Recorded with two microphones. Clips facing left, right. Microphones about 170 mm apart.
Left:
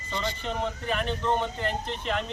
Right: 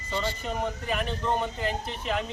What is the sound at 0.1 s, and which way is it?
Speech, 10° right (ahead or behind).